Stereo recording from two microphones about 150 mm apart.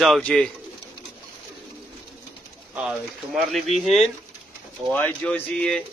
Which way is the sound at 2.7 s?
5° right (ahead or behind).